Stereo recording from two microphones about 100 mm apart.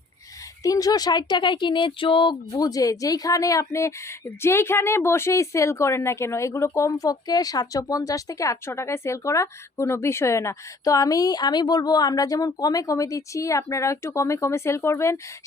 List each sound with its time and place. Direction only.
0.6 s speech: 35° left (ahead or behind); by 2.3 s 60° left (ahead or behind)
2.5 s speech: 40° left (ahead or behind)